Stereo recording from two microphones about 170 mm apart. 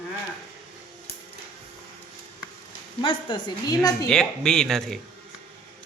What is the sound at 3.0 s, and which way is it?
A woman's voice, 25° left (ahead or behind).